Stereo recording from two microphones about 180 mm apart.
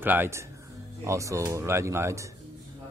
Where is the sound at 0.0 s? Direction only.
10° right (ahead or behind).